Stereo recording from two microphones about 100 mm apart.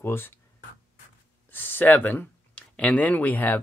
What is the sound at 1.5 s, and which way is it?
Speech, 20° left (ahead or behind).